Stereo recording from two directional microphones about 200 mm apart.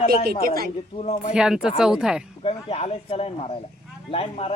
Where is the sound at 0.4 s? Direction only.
50° right (ahead or behind).